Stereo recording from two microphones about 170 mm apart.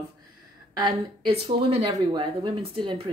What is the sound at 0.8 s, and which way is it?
Speech, 35° right (ahead or behind).